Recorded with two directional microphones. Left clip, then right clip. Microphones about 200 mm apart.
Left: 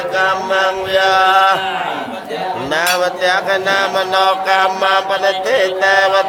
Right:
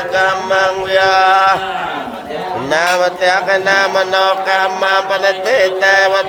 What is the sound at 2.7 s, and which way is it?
Mantra, 15° right (ahead or behind).